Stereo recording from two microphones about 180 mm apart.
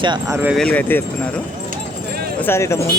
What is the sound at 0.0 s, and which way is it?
Speech, 25° right (ahead or behind).